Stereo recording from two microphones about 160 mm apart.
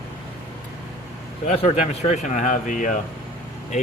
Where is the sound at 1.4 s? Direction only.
45° left (ahead or behind).